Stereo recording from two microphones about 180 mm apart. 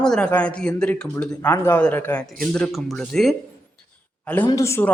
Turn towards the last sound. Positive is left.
turn(degrees=15)  # may be behind; listen again after turning